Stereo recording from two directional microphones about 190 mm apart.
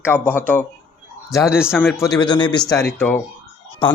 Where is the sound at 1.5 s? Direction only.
5° right (ahead or behind).